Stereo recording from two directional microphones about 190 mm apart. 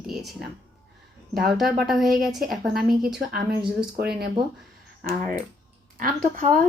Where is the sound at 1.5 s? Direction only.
Centre (ahead or behind).